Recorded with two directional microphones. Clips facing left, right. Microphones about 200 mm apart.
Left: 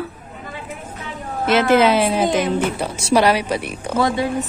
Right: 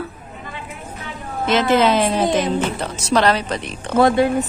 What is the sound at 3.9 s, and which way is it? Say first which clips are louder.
Speech: right 5 dB; 55° right (ahead or behind).